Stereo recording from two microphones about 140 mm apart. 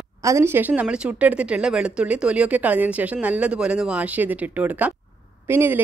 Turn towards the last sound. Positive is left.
turn(degrees=-15)  # may be behind; listen again after turning